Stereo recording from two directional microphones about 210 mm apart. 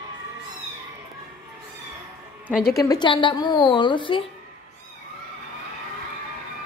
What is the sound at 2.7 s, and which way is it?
A woman's voice, 15° left (ahead or behind).